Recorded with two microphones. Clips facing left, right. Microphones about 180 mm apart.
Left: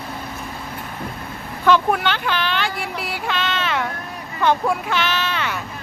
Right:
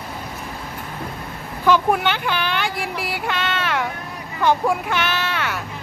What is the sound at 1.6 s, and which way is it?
Speech, 10° right (ahead or behind).